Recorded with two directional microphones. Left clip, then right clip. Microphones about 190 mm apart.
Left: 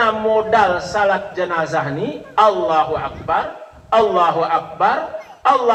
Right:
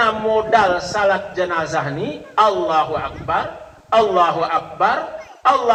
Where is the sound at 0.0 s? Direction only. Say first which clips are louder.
Left 1 dB; 35° right (ahead or behind).